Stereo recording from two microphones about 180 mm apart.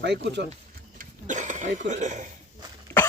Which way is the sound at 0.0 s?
70° right (ahead or behind).